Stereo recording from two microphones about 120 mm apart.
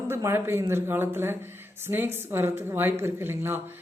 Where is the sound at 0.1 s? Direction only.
20° right (ahead or behind).